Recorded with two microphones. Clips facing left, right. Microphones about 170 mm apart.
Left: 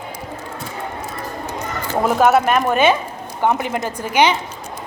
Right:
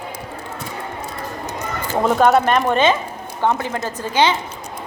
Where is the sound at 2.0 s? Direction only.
5° left (ahead or behind).